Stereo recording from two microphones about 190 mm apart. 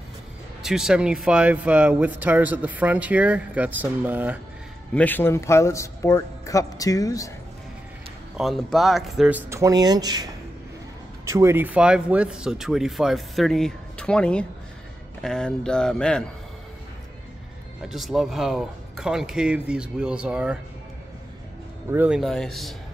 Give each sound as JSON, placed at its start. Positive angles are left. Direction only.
{"t": 0.6, "sound": "speech", "side_deg": -5}
{"t": 4.9, "sound": "speech", "side_deg": 10}
{"t": 8.4, "sound": "speech", "side_deg": 0}
{"t": 9.5, "sound": "speech", "side_deg": -15}
{"t": 17.8, "sound": "speech", "side_deg": 0}
{"t": 21.9, "sound": "speech", "side_deg": -5}